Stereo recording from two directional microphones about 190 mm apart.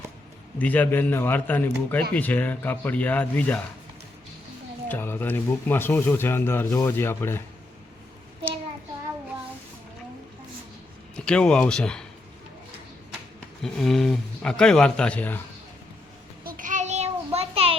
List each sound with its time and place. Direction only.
0.6 s speech: 10° left (ahead or behind)
4.9 s speech: 10° left (ahead or behind)
11.3 s speech: 5° left (ahead or behind)
13.6 s speech: centre (ahead or behind)
16.4 s child singing: 45° right (ahead or behind); by 17.7 s 30° right (ahead or behind)